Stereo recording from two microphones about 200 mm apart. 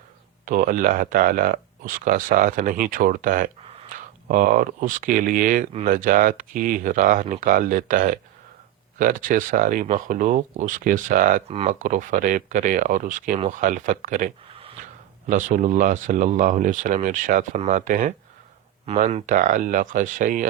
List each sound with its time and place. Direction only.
0.4 s speech: 45° right (ahead or behind)